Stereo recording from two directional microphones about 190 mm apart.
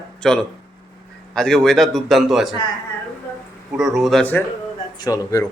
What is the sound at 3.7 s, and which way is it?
Speech, centre (ahead or behind).